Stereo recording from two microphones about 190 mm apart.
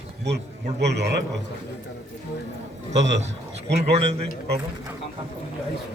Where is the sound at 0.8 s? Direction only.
60° right (ahead or behind).